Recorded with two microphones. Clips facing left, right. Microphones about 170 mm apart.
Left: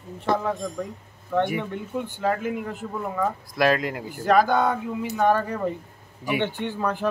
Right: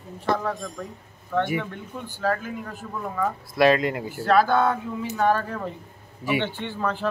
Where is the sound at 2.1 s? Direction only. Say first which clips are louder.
Even; 20° left (ahead or behind).